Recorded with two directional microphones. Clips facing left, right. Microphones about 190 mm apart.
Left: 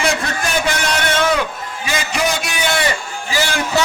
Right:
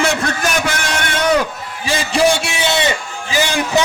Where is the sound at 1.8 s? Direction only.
30° right (ahead or behind).